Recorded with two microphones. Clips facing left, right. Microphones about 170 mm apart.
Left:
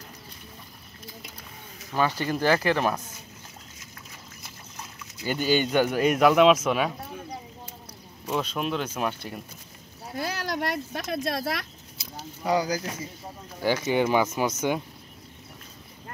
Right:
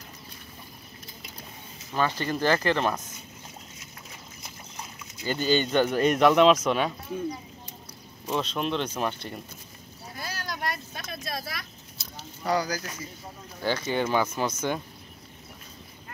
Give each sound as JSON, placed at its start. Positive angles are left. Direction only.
{"t": 2.0, "sound": "speech", "side_deg": 10}
{"t": 5.2, "sound": "speech", "side_deg": 10}
{"t": 8.3, "sound": "speech", "side_deg": 5}
{"t": 10.1, "sound": "speech", "side_deg": 70}
{"t": 12.4, "sound": "speech", "side_deg": 20}